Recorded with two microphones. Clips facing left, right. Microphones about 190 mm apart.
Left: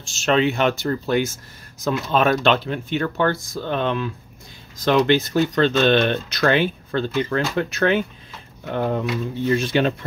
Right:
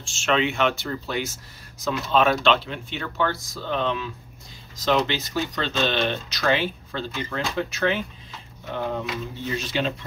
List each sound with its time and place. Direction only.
0.0 s speech: 40° left (ahead or behind); by 9.9 s 55° left (ahead or behind)